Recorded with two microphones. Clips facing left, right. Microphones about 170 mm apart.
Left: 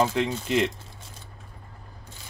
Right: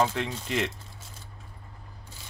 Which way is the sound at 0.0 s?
20° left (ahead or behind).